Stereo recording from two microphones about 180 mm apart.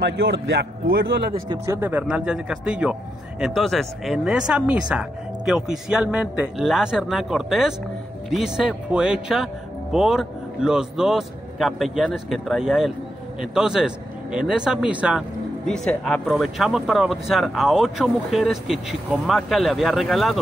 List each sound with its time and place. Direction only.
0.0 s a man's voice: 75° right (ahead or behind)
1.5 s speech: 15° right (ahead or behind)